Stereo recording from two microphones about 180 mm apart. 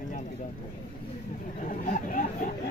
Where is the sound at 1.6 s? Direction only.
45° left (ahead or behind).